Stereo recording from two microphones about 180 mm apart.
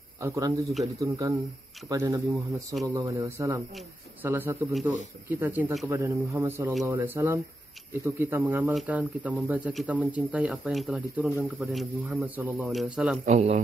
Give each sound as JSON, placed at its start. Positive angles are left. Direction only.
{"t": 0.2, "sound": "speech", "side_deg": -15}
{"t": 13.2, "sound": "speech", "side_deg": -40}